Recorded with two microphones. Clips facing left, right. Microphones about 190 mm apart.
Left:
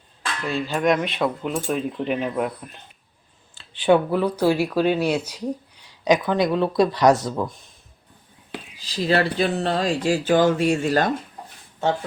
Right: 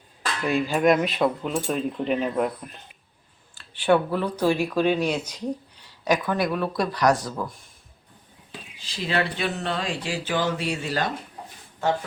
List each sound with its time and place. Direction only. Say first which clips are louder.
0.4 s speech: right 2 dB; 15° right (ahead or behind)
0.8 s speech: even; 5° right (ahead or behind)
3.5 s speech: left 3 dB; 20° left (ahead or behind)
8.8 s speech: left 5 dB; 40° left (ahead or behind)